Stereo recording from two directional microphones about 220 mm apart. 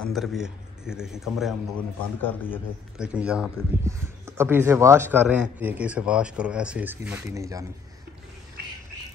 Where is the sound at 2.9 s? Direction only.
5° right (ahead or behind).